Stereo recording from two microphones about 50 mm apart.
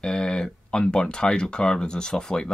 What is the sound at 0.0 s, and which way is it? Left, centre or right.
Speech, centre.